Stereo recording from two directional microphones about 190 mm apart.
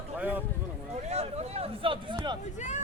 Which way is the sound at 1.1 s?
35° right (ahead or behind).